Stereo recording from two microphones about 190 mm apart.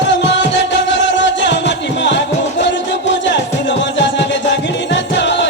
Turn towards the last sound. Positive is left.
turn(degrees=70)  # may be behind; listen again after turning